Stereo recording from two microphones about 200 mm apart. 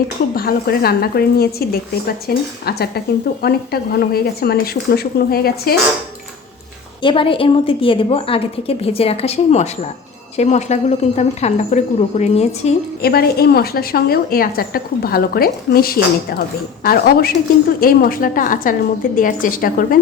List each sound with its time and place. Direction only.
0.3 s a woman's voice: 50° left (ahead or behind)
7.0 s a woman's voice: 25° left (ahead or behind)
13.0 s a woman's voice: 50° left (ahead or behind)